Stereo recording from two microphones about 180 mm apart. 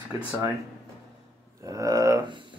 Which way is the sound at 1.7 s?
20° right (ahead or behind).